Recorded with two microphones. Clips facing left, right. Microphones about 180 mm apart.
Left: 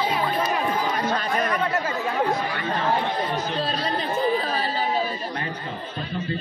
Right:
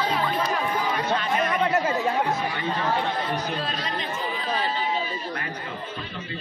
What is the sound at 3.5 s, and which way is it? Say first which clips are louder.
Chatter: left 4 dB; 35° left (ahead or behind).